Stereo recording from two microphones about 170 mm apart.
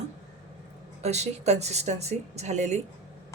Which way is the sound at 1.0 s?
40° right (ahead or behind).